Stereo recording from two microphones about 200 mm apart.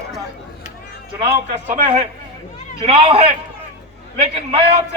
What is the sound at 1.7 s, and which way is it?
A man's voice, 35° right (ahead or behind).